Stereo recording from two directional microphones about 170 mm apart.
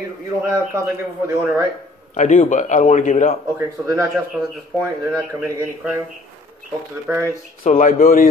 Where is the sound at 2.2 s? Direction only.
45° left (ahead or behind).